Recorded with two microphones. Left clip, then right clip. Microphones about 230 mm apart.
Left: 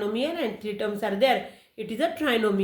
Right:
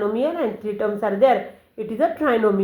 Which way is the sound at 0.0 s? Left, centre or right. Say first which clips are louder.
Right 6 dB; left.